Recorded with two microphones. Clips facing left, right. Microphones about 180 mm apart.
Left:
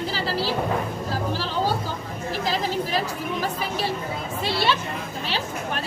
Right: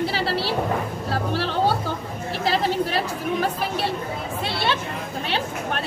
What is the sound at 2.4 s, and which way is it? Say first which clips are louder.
Chatter: right 5 dB; 65° right (ahead or behind).